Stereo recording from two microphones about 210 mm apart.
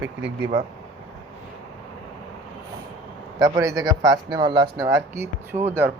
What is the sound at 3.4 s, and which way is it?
A man's voice, 15° right (ahead or behind).